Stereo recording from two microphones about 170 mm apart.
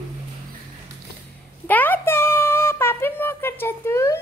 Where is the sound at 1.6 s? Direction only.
10° left (ahead or behind).